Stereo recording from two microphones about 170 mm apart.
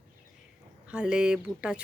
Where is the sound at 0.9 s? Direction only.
5° right (ahead or behind).